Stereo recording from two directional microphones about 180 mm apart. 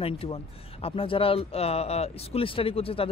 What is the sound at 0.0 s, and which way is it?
Speech, 30° left (ahead or behind).